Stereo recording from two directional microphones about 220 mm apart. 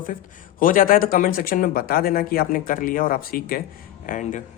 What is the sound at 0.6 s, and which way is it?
Speech, 40° left (ahead or behind).